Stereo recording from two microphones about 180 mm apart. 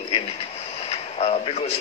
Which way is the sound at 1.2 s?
35° left (ahead or behind).